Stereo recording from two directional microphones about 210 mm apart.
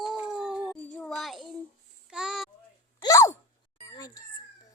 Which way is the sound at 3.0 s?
15° left (ahead or behind).